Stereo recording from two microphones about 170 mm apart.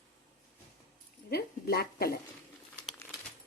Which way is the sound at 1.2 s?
70° left (ahead or behind).